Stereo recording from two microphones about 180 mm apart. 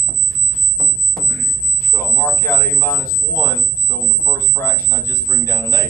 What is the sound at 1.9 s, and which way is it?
Speech, 15° left (ahead or behind).